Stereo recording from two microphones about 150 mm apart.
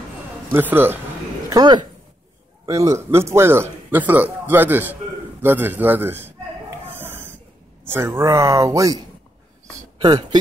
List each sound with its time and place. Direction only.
0.5 s a man's voice: 15° right (ahead or behind)
1.5 s a man's voice: 30° right (ahead or behind)
6.9 s a sound: 15° right (ahead or behind)
7.8 s speech: 15° right (ahead or behind)